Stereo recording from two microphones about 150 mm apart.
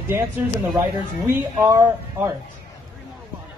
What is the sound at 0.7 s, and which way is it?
Speech, 15° right (ahead or behind).